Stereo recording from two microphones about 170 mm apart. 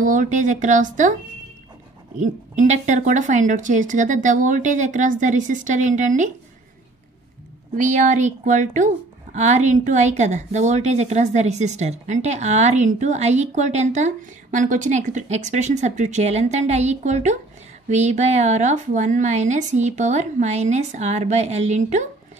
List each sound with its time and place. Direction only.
0.0 s speech: 50° right (ahead or behind)
2.1 s speech: 45° right (ahead or behind)
7.7 s speech: 50° right (ahead or behind)